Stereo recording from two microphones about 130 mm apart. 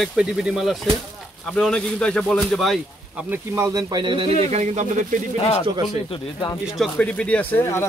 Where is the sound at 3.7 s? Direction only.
30° right (ahead or behind); by 5.1 s 70° right (ahead or behind).